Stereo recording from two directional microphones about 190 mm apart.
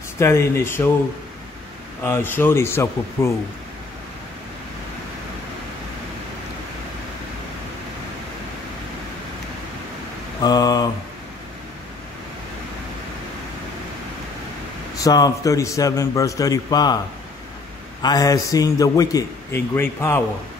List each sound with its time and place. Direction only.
0.2 s a man's voice: 15° left (ahead or behind)
2.0 s a man's voice: 10° left (ahead or behind)
10.4 s speech: 20° left (ahead or behind)
15.0 s a man's voice: 20° left (ahead or behind)
18.0 s a man's voice: 20° left (ahead or behind)